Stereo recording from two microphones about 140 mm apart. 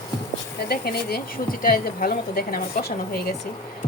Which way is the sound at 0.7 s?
90° left.